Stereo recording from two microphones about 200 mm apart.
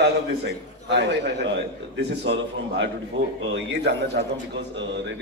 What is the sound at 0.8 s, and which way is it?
A man's voice, 60° right (ahead or behind).